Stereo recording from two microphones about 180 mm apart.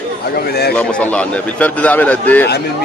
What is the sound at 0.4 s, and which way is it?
Speech, 60° left (ahead or behind).